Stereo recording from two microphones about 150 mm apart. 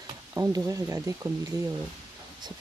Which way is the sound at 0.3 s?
20° right (ahead or behind).